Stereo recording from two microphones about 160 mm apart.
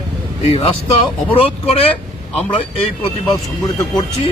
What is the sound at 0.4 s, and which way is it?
Speech, 40° left (ahead or behind).